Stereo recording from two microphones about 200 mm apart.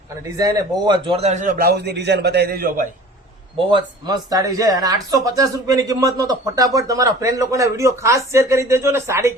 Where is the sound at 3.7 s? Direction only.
20° right (ahead or behind).